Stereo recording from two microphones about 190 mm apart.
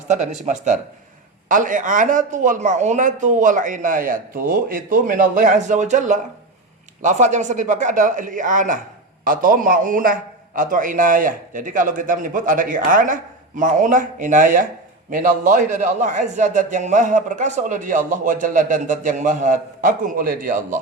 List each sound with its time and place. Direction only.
0.1 s a man's voice: 35° right (ahead or behind)